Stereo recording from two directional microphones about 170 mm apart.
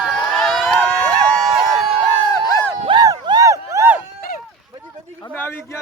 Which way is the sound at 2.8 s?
25° right (ahead or behind).